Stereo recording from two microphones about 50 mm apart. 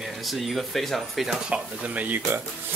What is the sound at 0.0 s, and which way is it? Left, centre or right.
Speech, centre.